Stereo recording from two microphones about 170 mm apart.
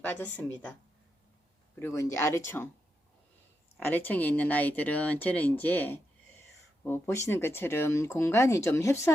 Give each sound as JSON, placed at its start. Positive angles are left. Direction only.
{"t": 0.0, "sound": "speech", "side_deg": 10}
{"t": 1.8, "sound": "speech", "side_deg": 15}
{"t": 3.8, "sound": "speech", "side_deg": 10}